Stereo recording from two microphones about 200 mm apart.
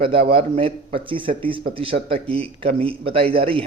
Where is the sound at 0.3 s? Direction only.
30° right (ahead or behind).